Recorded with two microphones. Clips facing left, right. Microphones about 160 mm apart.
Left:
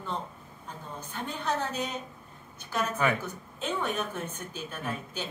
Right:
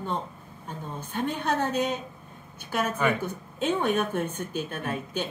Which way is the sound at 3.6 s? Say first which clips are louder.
Right 6 dB; 60° right (ahead or behind).